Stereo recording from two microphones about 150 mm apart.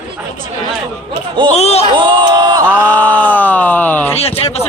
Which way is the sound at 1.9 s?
30° right (ahead or behind).